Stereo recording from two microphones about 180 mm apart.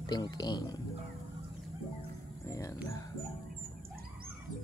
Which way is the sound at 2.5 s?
15° left (ahead or behind).